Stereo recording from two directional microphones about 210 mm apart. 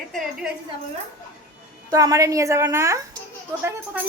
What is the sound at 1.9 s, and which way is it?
A woman's voice, 15° right (ahead or behind).